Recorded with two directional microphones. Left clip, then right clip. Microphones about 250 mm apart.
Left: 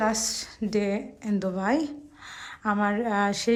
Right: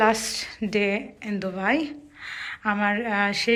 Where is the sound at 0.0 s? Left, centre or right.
Centre.